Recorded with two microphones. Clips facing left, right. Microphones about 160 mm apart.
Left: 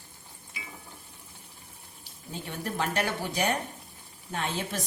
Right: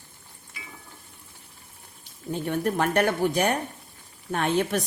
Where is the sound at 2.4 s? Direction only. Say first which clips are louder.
Right 7 dB; 55° right (ahead or behind).